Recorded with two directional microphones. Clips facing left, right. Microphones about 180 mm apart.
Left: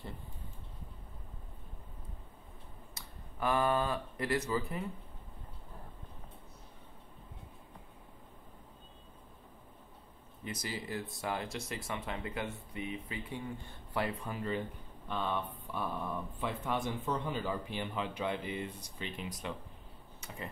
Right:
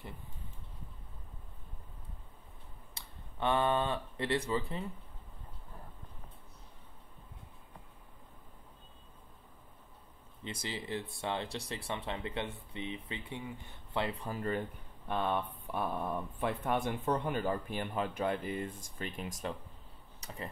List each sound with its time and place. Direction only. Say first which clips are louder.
2.9 s speech: left 2 dB; 30° right (ahead or behind)
10.4 s speech: even; 25° right (ahead or behind)
14.2 s speech: right 1 dB; 45° right (ahead or behind)